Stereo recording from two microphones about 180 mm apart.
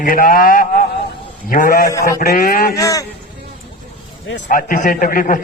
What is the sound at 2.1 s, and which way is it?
Speech, 55° left (ahead or behind).